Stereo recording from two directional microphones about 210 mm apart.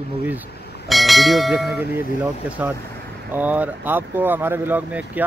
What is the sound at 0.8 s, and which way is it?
Speech, centre (ahead or behind).